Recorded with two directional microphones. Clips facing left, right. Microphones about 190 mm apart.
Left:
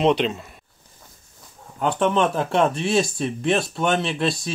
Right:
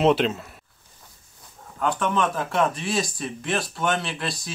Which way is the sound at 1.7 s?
25° left (ahead or behind).